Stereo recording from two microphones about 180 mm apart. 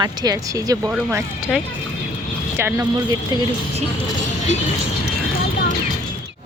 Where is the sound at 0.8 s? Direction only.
10° right (ahead or behind).